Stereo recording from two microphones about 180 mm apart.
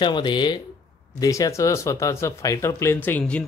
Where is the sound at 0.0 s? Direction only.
25° left (ahead or behind).